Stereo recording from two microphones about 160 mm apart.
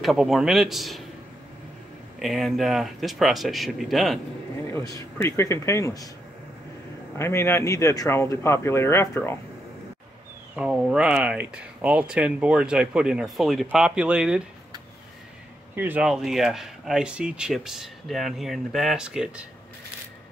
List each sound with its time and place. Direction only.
0.0 s speech: centre (ahead or behind)
2.1 s speech: centre (ahead or behind)
4.7 s speech: 20° left (ahead or behind)
7.2 s speech: 15° left (ahead or behind)
10.5 s speech: 5° right (ahead or behind)
15.7 s speech: 10° right (ahead or behind)